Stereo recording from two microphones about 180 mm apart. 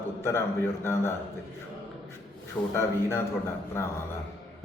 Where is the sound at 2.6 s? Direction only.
20° left (ahead or behind).